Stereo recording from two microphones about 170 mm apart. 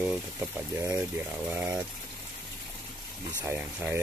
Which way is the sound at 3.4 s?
10° right (ahead or behind).